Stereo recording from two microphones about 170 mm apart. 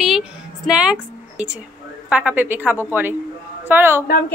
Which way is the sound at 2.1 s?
10° right (ahead or behind).